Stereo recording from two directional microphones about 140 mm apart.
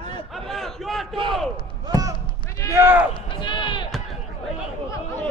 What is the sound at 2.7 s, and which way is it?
Speech, 20° right (ahead or behind).